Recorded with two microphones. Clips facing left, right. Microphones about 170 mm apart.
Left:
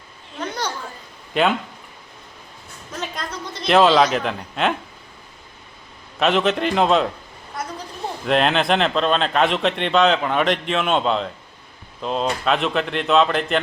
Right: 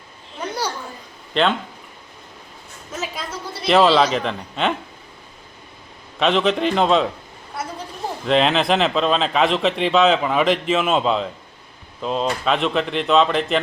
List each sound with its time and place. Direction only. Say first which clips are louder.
0.3 s a sound: right 1 dB; 10° right (ahead or behind)
1.3 s speech: even; 10° left (ahead or behind)
2.9 s speech: right 1 dB; 5° right (ahead or behind)
6.1 s speech: right 1 dB; centre (ahead or behind)
7.6 s a sound: right 1 dB; 5° right (ahead or behind)
8.3 s speech: right 1 dB; centre (ahead or behind)